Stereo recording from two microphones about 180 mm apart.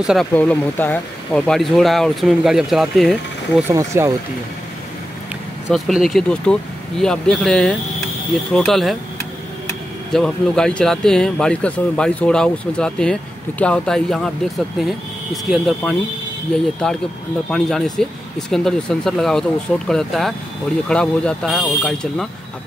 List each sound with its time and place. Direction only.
0.0 s speech: centre (ahead or behind)
0.3 s speech: 10° left (ahead or behind)
3.6 s speech: 15° right (ahead or behind)
5.7 s speech: centre (ahead or behind)
10.1 s speech: 5° left (ahead or behind)
15.5 s speech: centre (ahead or behind)